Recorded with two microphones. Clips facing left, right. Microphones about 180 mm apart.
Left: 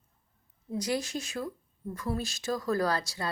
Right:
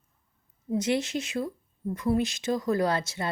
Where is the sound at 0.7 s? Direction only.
25° right (ahead or behind).